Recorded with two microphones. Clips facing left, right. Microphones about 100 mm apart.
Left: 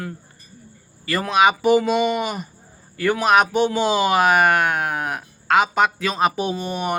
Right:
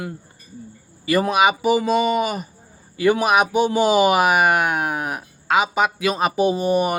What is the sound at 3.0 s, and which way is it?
Speech, 15° right (ahead or behind).